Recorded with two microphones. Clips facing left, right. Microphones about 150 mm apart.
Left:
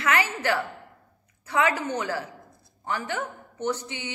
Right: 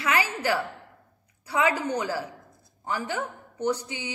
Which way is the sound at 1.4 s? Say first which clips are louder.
Even; 15° right (ahead or behind).